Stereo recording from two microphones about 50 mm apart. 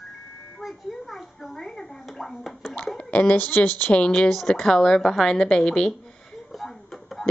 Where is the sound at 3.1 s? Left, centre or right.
Left.